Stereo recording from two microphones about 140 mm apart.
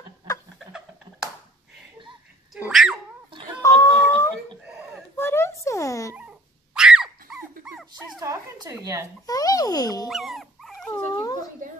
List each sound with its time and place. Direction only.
0.6 s chuckle: 5° right (ahead or behind)
2.5 s dog: centre (ahead or behind)
3.6 s a sound: 20° left (ahead or behind)
6.1 s dog: 5° right (ahead or behind)
8.2 s a sound: 25° right (ahead or behind)
9.2 s dog: 25° left (ahead or behind)
10.0 s dog: centre (ahead or behind)
11.1 s dog: 30° left (ahead or behind)